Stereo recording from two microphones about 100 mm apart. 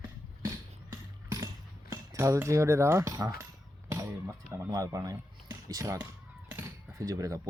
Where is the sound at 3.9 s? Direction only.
30° right (ahead or behind).